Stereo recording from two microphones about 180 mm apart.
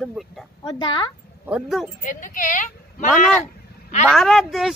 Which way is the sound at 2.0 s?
45° left (ahead or behind).